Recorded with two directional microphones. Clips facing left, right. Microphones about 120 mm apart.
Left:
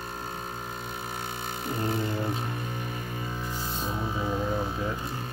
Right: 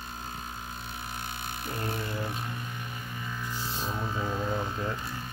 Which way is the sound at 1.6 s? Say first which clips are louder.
Left 5 dB; 25° left (ahead or behind).